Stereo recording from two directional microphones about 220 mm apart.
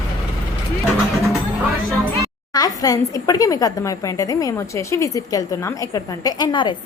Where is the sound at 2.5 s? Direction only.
15° left (ahead or behind).